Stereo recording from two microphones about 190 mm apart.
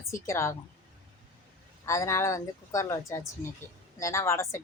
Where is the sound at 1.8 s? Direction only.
15° left (ahead or behind).